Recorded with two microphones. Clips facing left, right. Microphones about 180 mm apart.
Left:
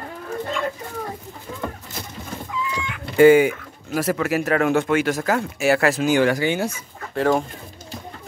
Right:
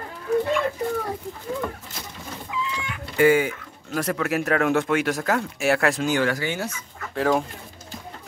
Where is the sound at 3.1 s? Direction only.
25° left (ahead or behind).